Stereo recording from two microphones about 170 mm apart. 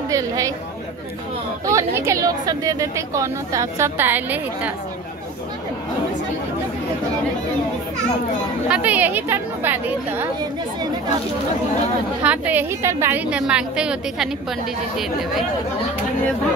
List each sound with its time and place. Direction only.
1.7 s a woman's voice: 15° right (ahead or behind)
8.6 s a woman's voice: 5° right (ahead or behind)
12.2 s a woman's voice: 10° right (ahead or behind)